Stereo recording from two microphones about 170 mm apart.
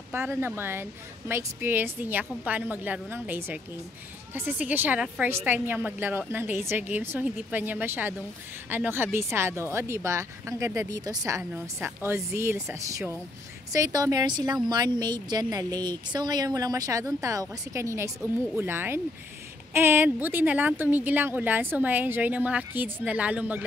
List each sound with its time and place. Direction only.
0.1 s speech: 15° right (ahead or behind)